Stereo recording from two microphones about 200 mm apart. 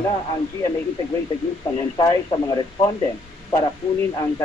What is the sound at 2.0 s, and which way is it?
Speech, 20° left (ahead or behind).